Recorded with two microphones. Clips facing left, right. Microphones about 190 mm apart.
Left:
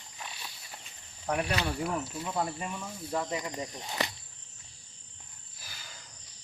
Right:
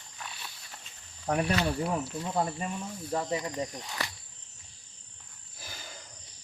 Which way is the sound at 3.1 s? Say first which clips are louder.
Right 1 dB; 35° right (ahead or behind).